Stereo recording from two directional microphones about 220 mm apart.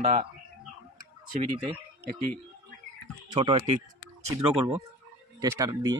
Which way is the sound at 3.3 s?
25° right (ahead or behind).